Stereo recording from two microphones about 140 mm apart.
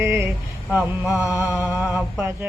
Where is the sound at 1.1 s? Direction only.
5° right (ahead or behind).